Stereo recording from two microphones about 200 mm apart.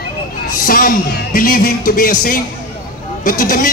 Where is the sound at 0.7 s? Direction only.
45° left (ahead or behind).